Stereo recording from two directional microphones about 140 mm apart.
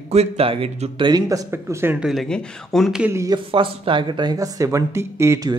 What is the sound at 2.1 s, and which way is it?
Speech, 5° left (ahead or behind).